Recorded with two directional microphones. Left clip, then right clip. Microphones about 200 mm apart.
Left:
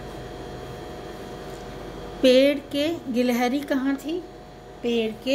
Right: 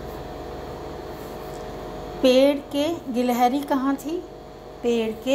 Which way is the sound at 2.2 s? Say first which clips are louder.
Even; 25° left (ahead or behind).